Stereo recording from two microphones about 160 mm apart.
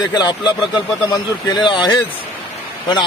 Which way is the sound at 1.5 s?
30° left (ahead or behind).